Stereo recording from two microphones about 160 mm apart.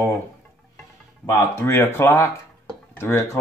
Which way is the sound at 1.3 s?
15° left (ahead or behind).